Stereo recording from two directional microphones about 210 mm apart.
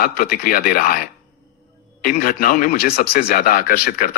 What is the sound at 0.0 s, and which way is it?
A man's voice, 45° left (ahead or behind).